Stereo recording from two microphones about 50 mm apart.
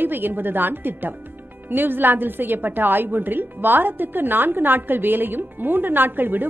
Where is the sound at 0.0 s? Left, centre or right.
Right.